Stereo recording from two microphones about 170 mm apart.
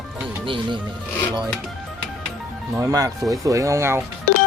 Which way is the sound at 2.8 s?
20° right (ahead or behind).